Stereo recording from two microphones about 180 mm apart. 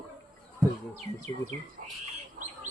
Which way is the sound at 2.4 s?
55° right (ahead or behind).